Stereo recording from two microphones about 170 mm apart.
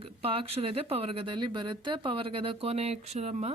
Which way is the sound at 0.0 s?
35° right (ahead or behind).